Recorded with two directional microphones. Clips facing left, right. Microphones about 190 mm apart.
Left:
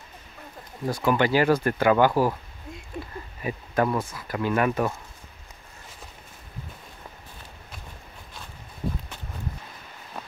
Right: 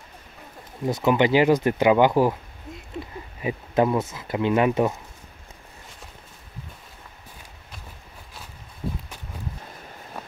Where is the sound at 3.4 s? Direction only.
15° right (ahead or behind).